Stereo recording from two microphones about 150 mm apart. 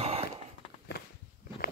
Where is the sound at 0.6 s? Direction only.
40° left (ahead or behind).